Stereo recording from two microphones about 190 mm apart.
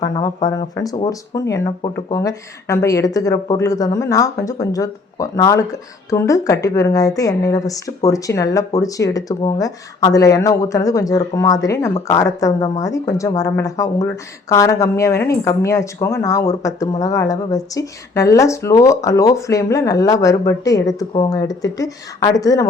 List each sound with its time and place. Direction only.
0.0 s speech: 20° left (ahead or behind)